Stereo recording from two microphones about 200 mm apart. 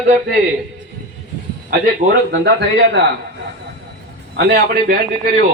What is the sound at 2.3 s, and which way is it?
Speech, 60° right (ahead or behind).